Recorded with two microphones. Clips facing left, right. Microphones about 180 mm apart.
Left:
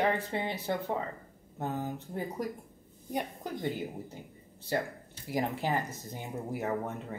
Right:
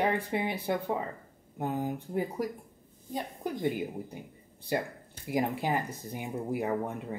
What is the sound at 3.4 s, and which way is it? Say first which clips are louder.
Speech: right 3 dB; 15° right (ahead or behind).